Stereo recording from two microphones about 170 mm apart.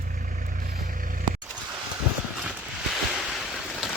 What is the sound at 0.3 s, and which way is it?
Vehicle, 55° right (ahead or behind).